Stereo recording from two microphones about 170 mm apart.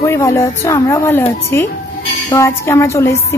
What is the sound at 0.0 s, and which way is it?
A woman's voice, 15° left (ahead or behind).